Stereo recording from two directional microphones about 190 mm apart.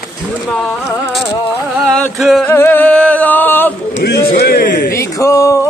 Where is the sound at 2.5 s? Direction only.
10° left (ahead or behind).